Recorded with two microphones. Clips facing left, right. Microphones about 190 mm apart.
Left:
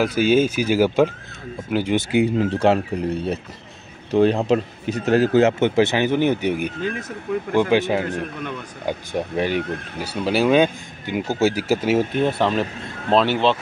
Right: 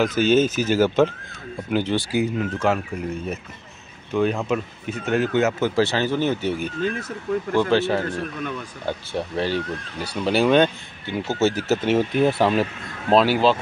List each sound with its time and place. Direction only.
0.0 s speech: 10° left (ahead or behind)
2.0 s speech: 25° left (ahead or behind)
5.8 s speech: 20° left (ahead or behind)
12.2 s speech: 5° right (ahead or behind)